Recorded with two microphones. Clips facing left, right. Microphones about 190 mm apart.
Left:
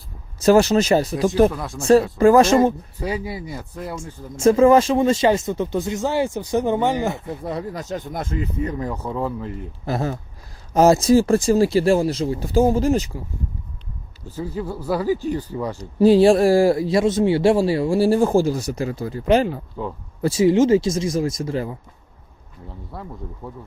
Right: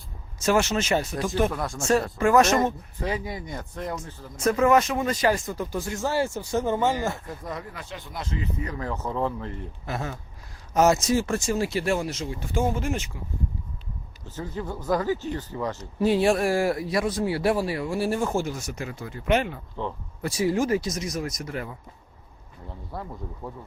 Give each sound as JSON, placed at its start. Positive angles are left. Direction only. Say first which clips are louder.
{"t": 0.3, "sound": "a man's voice", "louder": "left 8 dB", "side_deg": 35}
{"t": 1.5, "sound": "speech", "louder": "left 1 dB", "side_deg": 0}
{"t": 2.1, "sound": "a man's voice", "louder": "left 6 dB", "side_deg": 30}
{"t": 3.2, "sound": "speech", "louder": "left 4 dB", "side_deg": 10}
{"t": 3.9, "sound": "speech", "louder": "left 4 dB", "side_deg": 25}
{"t": 7.4, "sound": "a man's voice", "louder": "left 9 dB", "side_deg": 35}
{"t": 8.6, "sound": "speech", "louder": "left 5 dB", "side_deg": 15}
{"t": 9.8, "sound": "a man's voice", "louder": "left 9 dB", "side_deg": 35}
{"t": 14.3, "sound": "speech", "louder": "left 5 dB", "side_deg": 10}
{"t": 15.8, "sound": "a man's voice", "louder": "left 9 dB", "side_deg": 30}
{"t": 19.8, "sound": "speech", "louder": "left 1 dB", "side_deg": 10}
{"t": 20.2, "sound": "speech", "louder": "left 8 dB", "side_deg": 25}
{"t": 22.9, "sound": "speech", "louder": "left 1 dB", "side_deg": 0}